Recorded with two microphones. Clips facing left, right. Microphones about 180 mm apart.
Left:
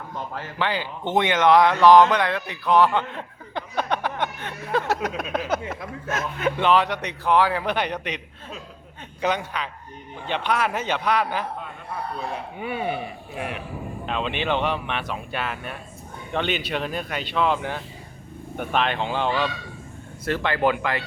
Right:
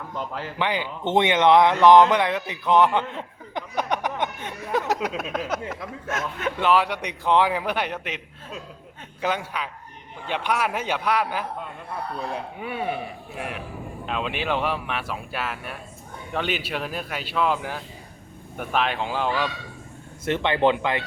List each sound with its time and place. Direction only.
0.6 s speech: 20° right (ahead or behind)
5.0 s a man's voice: centre (ahead or behind)
12.5 s speech: centre (ahead or behind)
20.2 s speech: 20° right (ahead or behind)